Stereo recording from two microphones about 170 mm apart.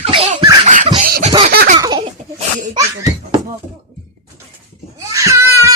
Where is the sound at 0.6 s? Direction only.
40° right (ahead or behind).